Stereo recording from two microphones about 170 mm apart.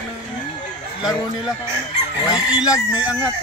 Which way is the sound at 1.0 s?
5° right (ahead or behind).